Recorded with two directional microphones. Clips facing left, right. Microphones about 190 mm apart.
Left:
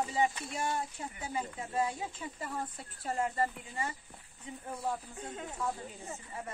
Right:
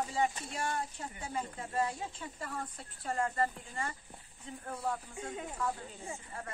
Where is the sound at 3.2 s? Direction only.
20° left (ahead or behind).